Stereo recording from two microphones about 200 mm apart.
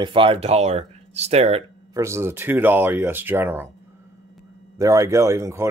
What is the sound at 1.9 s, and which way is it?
Speech, 15° right (ahead or behind).